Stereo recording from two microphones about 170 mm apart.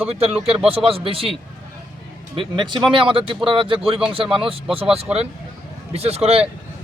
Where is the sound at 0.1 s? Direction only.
35° right (ahead or behind).